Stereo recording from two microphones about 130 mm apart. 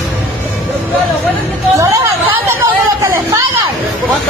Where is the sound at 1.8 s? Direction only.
25° right (ahead or behind).